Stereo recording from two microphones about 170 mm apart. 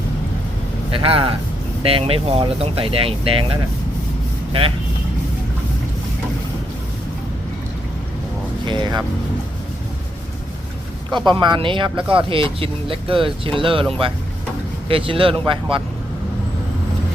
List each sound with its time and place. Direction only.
0.9 s speech: 30° right (ahead or behind)
8.6 s speech: 25° right (ahead or behind)
11.3 s speech: 25° right (ahead or behind)
14.8 s speech: 30° right (ahead or behind)